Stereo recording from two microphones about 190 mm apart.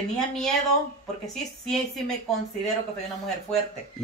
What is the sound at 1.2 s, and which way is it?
Speech, centre (ahead or behind).